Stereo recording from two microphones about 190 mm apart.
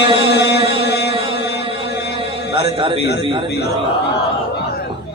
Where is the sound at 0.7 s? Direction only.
60° left (ahead or behind).